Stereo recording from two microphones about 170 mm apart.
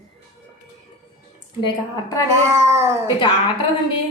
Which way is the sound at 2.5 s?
15° right (ahead or behind).